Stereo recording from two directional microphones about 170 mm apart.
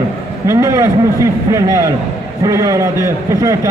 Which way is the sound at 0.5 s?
15° right (ahead or behind).